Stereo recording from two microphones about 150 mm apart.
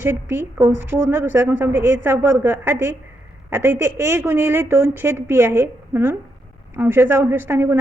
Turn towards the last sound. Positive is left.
turn(degrees=-15)  # may be behind; listen again after turning